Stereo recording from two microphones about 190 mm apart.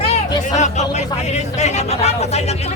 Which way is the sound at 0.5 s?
40° left (ahead or behind).